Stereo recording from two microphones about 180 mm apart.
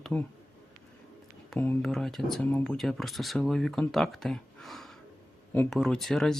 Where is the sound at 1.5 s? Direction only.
5° left (ahead or behind).